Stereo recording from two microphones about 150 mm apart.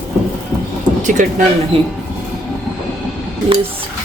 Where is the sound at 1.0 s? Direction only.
55° right (ahead or behind).